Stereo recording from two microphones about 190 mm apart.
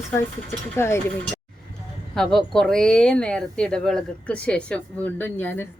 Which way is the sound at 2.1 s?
Centre (ahead or behind).